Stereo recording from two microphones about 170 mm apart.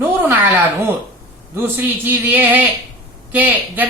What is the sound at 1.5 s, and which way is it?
A woman's voice, 10° right (ahead or behind).